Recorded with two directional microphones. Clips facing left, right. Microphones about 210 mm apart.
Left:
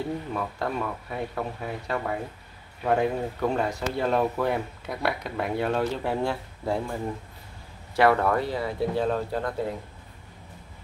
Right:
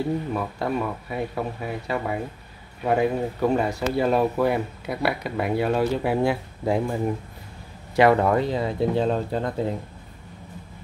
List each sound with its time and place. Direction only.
0.3 s speech: 10° right (ahead or behind); by 9.5 s 25° right (ahead or behind)